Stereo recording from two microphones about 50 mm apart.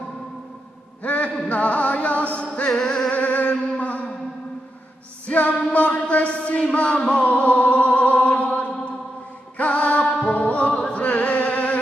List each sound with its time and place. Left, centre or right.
1.0 s a sound: left
1.5 s music: left
2.7 s music: centre
3.1 s music: left
5.2 s music: left